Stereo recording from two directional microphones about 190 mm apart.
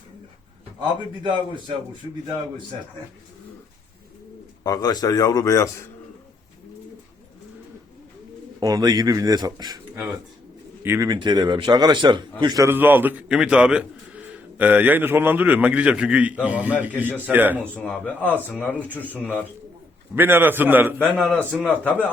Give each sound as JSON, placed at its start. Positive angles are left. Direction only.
{"t": 1.2, "sound": "speech", "side_deg": -25}
{"t": 4.6, "sound": "speech", "side_deg": 20}
{"t": 8.6, "sound": "a man's voice", "side_deg": -20}
{"t": 17.7, "sound": "a man's voice", "side_deg": 5}
{"t": 20.1, "sound": "a man's voice", "side_deg": -10}
{"t": 21.0, "sound": "a man's voice", "side_deg": 5}